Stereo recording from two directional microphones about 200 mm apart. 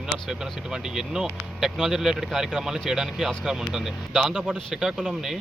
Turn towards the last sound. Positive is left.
turn(degrees=0)  # may be behind; listen again after turning